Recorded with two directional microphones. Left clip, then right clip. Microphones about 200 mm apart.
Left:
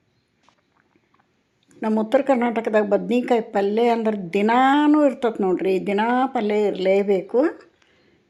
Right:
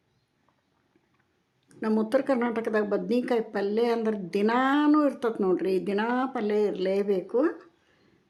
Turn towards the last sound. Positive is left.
turn(degrees=10)  # may be behind; listen again after turning